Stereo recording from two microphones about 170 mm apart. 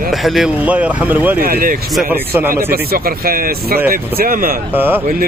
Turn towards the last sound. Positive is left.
turn(degrees=-10)  # may be behind; listen again after turning